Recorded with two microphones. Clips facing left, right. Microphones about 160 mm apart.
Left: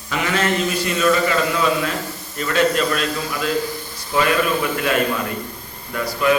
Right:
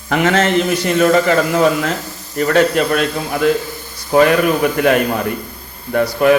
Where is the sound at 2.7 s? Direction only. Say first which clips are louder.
Right 5 dB; 60° right (ahead or behind).